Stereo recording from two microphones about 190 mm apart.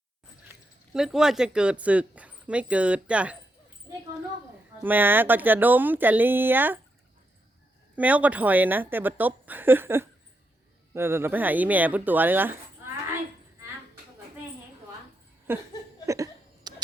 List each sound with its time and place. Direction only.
0.9 s speech: 5° right (ahead or behind)
4.8 s speech: 10° right (ahead or behind)
7.9 s speech: 10° right (ahead or behind)
15.5 s speech: 10° right (ahead or behind)
16.0 s a sound: 15° right (ahead or behind)